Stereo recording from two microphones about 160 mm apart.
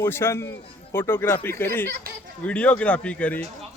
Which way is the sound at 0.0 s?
15° left (ahead or behind).